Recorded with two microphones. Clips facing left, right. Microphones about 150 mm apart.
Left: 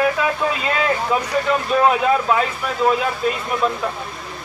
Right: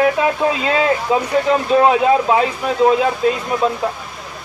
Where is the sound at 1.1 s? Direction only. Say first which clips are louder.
Right 4 dB; 20° right (ahead or behind).